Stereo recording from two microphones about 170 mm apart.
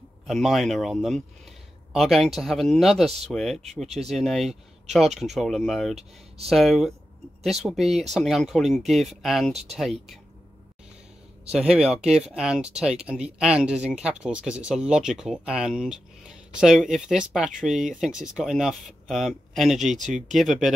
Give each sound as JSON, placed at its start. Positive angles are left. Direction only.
{"t": 0.3, "sound": "speech", "side_deg": 0}
{"t": 5.9, "sound": "speech", "side_deg": -35}
{"t": 6.5, "sound": "speech", "side_deg": 0}
{"t": 11.5, "sound": "speech", "side_deg": -5}